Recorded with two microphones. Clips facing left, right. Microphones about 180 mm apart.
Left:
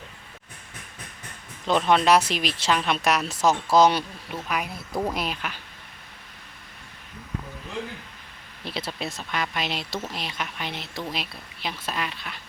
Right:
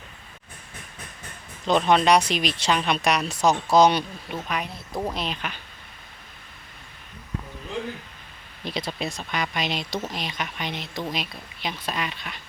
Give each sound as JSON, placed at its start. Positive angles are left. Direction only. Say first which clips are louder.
{"t": 1.6, "sound": "speech", "louder": "right 1 dB", "side_deg": 0}
{"t": 8.6, "sound": "speech", "louder": "right 2 dB", "side_deg": 5}